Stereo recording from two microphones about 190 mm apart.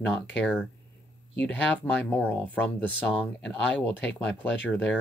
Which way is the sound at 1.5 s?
10° left (ahead or behind).